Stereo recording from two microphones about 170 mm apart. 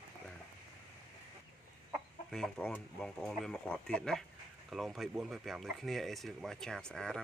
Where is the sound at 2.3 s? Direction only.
5° left (ahead or behind).